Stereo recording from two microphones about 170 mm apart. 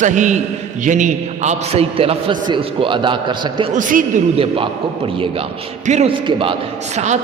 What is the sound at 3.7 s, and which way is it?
Speech, 50° right (ahead or behind).